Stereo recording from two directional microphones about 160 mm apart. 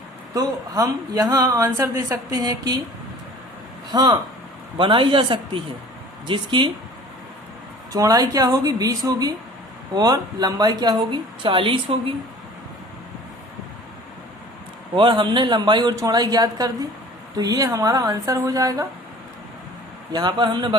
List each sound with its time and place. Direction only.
0.3 s a woman's voice: 20° right (ahead or behind)
3.9 s a woman's voice: 25° right (ahead or behind)
7.9 s a woman's voice: 25° right (ahead or behind)
14.9 s a woman's voice: 30° right (ahead or behind)
20.1 s a woman's voice: 30° right (ahead or behind)